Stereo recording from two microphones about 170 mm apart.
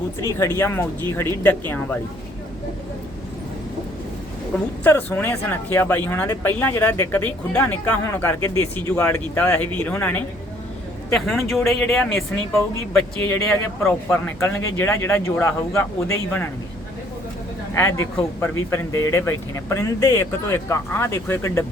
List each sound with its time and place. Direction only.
0.3 s speech: 15° left (ahead or behind)
4.8 s speech: 10° left (ahead or behind)
13.1 s speech: 15° left (ahead or behind)
17.7 s speech: 20° left (ahead or behind)